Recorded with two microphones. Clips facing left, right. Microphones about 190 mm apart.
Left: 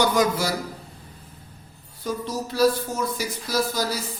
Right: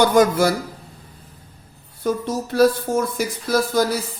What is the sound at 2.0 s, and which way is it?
A man's voice, 55° right (ahead or behind).